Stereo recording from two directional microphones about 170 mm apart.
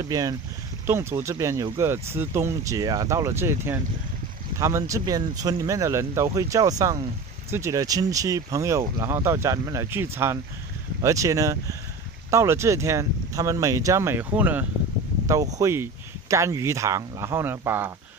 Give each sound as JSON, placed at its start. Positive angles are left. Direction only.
{"t": 0.0, "sound": "speech", "side_deg": -20}